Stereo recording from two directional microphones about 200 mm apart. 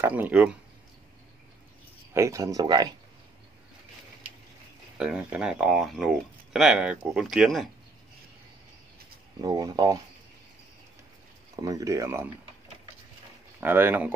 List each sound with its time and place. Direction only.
0.0 s speech: 10° right (ahead or behind)
2.1 s speech: 15° right (ahead or behind)
4.9 s speech: 5° right (ahead or behind)
9.4 s speech: 20° right (ahead or behind)
11.6 s speech: 15° right (ahead or behind)
13.6 s speech: 10° right (ahead or behind)